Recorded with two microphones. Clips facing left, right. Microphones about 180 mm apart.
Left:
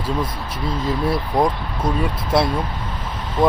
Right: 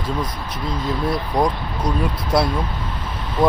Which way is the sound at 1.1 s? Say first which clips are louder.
Even; 25° left (ahead or behind).